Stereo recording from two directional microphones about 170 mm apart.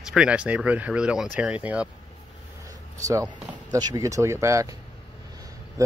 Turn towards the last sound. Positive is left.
turn(degrees=-20)  # may be behind; listen again after turning